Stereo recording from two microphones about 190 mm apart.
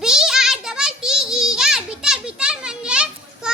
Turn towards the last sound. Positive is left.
turn(degrees=-5)  # may be behind; listen again after turning